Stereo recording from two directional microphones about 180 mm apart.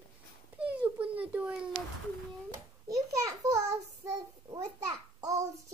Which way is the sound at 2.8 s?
20° right (ahead or behind).